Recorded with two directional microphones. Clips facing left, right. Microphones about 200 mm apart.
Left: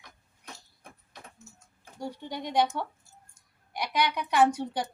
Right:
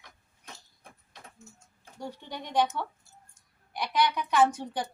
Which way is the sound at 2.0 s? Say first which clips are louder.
Left 3 dB; 15° left (ahead or behind).